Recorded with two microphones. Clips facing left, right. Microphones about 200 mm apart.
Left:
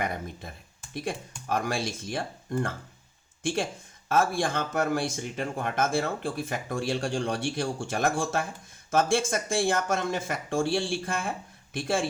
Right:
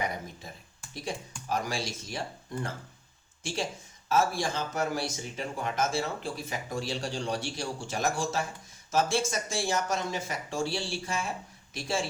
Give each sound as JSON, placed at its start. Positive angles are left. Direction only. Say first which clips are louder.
{"t": 0.0, "sound": "speech", "louder": "left 2 dB", "side_deg": 55}